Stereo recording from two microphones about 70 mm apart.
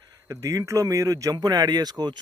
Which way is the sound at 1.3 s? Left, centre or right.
Right.